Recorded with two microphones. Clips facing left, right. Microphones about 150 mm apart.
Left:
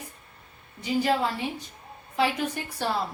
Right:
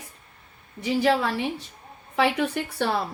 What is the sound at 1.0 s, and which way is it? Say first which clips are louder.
A woman's voice: right 4 dB; 70° right (ahead or behind).